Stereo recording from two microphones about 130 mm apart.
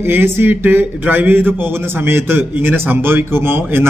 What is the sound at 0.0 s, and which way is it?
A man's voice, 15° right (ahead or behind).